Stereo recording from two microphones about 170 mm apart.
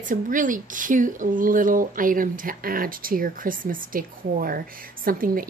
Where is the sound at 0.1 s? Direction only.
50° right (ahead or behind).